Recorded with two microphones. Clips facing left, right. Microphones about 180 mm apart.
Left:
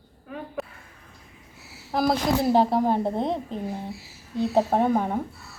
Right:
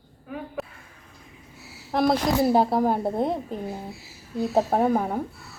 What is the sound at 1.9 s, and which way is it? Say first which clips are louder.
A woman's voice: right 1 dB; centre (ahead or behind).